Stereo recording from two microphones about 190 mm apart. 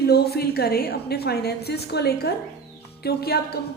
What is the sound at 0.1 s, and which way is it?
A woman's voice, 55° left (ahead or behind).